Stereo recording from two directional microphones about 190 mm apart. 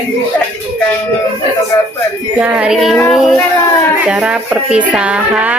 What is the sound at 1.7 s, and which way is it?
Speech, 15° left (ahead or behind).